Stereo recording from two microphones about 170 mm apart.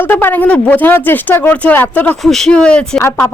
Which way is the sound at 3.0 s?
15° left (ahead or behind).